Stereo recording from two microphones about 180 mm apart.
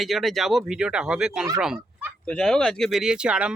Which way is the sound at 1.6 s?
5° right (ahead or behind).